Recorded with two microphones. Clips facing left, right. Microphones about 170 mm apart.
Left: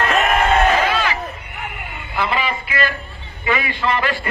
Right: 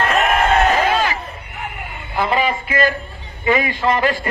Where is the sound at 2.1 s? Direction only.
40° right (ahead or behind).